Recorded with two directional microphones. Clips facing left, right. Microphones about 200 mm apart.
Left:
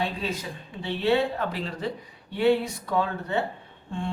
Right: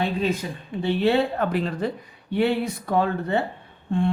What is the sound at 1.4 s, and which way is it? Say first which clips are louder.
Speech: right 6 dB; 55° right (ahead or behind).